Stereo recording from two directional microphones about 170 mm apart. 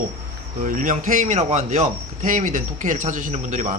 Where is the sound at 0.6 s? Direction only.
50° right (ahead or behind).